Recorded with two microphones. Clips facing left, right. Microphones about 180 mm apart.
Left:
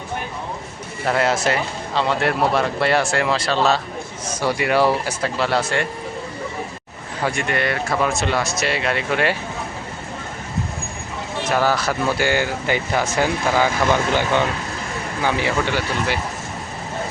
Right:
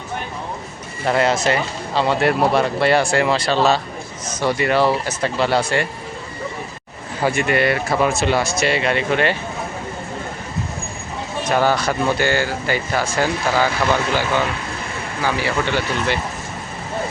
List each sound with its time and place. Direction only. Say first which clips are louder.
1.0 s speech: right 2 dB; centre (ahead or behind)
4.3 s speech: right 1 dB; 10° left (ahead or behind)
7.2 s speech: right 4 dB; 5° right (ahead or behind)
11.5 s speech: right 2 dB; 5° left (ahead or behind)